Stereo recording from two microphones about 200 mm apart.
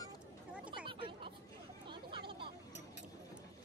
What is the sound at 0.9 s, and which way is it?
Chatter, 25° right (ahead or behind).